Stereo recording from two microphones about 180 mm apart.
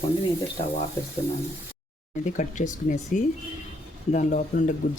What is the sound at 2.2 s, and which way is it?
Speech, 45° left (ahead or behind).